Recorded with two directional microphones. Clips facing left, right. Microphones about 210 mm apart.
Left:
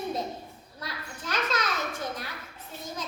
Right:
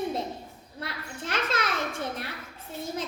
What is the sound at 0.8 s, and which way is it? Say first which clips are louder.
Speech: right 3 dB; 25° right (ahead or behind).